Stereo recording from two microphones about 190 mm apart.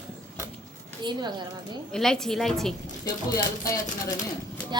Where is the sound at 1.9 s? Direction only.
5° left (ahead or behind).